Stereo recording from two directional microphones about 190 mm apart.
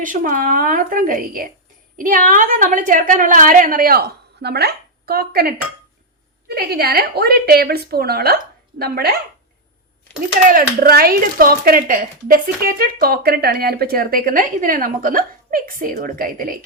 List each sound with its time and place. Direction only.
0.0 s speech: 45° right (ahead or behind)
10.5 s speech: 50° right (ahead or behind)